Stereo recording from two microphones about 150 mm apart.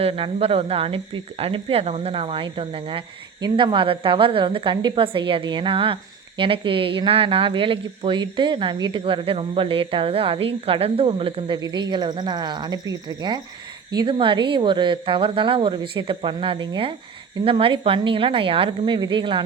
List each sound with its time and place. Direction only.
0.0 s a woman's voice: 40° right (ahead or behind)